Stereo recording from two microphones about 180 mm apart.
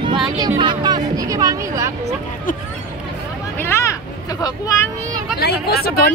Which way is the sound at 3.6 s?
15° left (ahead or behind).